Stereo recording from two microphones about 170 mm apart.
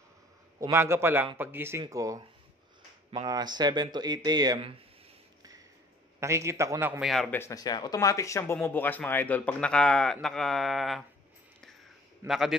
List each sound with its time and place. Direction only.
0.6 s a man's voice: 15° right (ahead or behind)
6.1 s a man's voice: 15° right (ahead or behind)
7.1 s speech: centre (ahead or behind)
7.3 s speech: 20° left (ahead or behind); by 11.1 s centre (ahead or behind)
12.3 s speech: centre (ahead or behind)